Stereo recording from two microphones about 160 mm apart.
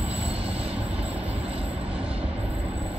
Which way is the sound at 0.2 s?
40° right (ahead or behind).